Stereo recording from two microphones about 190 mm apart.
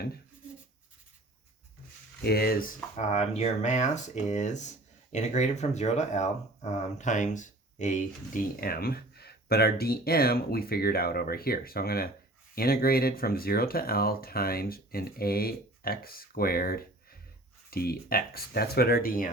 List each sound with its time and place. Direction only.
2.2 s speech: 55° left (ahead or behind)
2.9 s speech: 35° left (ahead or behind)